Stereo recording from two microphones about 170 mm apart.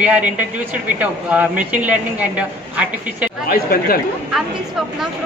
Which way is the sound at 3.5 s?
60° left (ahead or behind).